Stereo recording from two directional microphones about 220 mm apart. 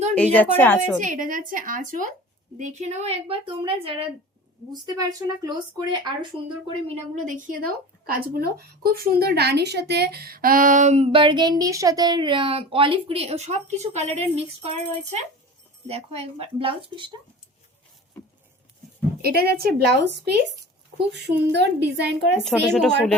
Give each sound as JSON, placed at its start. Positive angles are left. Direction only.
{"t": 0.1, "sound": "a woman's voice", "side_deg": 5}
{"t": 1.0, "sound": "a woman's voice", "side_deg": -35}
{"t": 15.9, "sound": "a woman's voice", "side_deg": -25}
{"t": 19.2, "sound": "a woman's voice", "side_deg": -45}
{"t": 22.4, "sound": "speech", "side_deg": 5}